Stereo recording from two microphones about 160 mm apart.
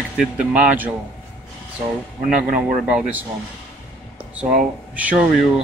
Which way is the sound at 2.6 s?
10° right (ahead or behind).